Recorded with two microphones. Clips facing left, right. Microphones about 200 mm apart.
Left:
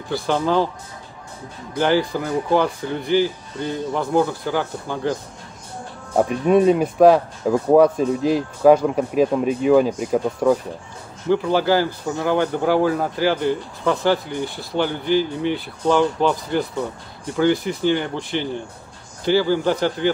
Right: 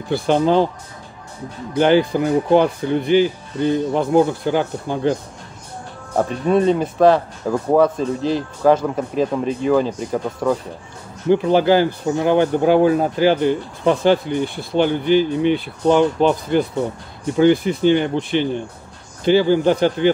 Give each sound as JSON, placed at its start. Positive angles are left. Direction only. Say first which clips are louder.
{"t": 0.3, "sound": "speech", "louder": "right 4 dB", "side_deg": -20}
{"t": 1.8, "sound": "speech", "louder": "right 4 dB", "side_deg": -20}
{"t": 6.1, "sound": "speech", "louder": "left 1 dB", "side_deg": 10}
{"t": 11.2, "sound": "speech", "louder": "right 4 dB", "side_deg": -20}